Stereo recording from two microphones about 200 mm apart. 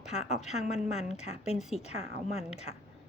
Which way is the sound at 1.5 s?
Centre (ahead or behind).